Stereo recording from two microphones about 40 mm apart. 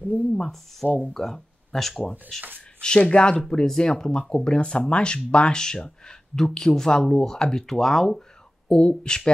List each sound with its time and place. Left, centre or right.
0.0 s speech: left
0.4 s speech: centre
3.0 s speech: left
4.2 s speech: centre
4.5 s speech: left
8.6 s speech: left